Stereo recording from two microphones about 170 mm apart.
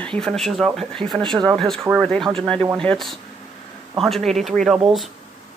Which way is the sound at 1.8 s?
15° right (ahead or behind).